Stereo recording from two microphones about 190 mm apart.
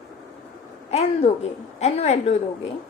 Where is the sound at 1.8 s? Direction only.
35° left (ahead or behind).